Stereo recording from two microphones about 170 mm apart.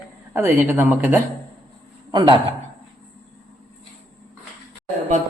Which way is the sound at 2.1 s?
25° right (ahead or behind).